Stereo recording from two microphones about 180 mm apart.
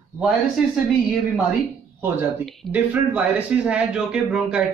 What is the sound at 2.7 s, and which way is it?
Speech, 10° right (ahead or behind).